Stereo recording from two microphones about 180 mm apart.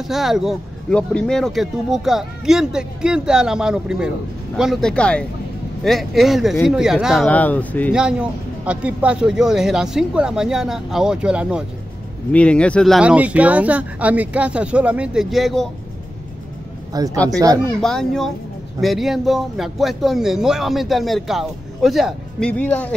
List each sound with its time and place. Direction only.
0.0 s a man's voice: centre (ahead or behind)
7.2 s speech: 10° left (ahead or behind)
7.9 s a man's voice: 5° right (ahead or behind)
12.3 s speech: 5° left (ahead or behind)
16.9 s speech: 20° right (ahead or behind)
17.8 s a man's voice: centre (ahead or behind)